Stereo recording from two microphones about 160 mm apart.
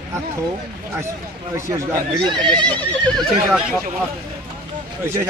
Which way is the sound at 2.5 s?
10° left (ahead or behind).